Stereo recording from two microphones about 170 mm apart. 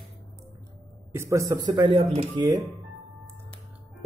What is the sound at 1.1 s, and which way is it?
Speech, 15° right (ahead or behind).